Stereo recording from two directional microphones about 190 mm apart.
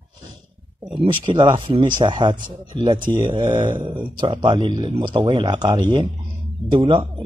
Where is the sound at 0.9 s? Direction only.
25° right (ahead or behind).